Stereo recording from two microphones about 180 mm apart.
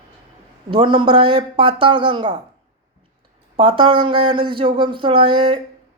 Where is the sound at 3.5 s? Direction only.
30° right (ahead or behind).